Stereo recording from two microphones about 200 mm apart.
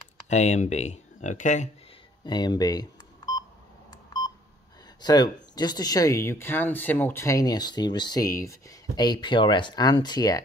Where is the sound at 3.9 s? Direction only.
20° left (ahead or behind).